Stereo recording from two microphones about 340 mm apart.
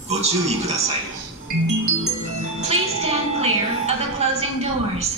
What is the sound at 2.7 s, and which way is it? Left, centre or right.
Music, centre.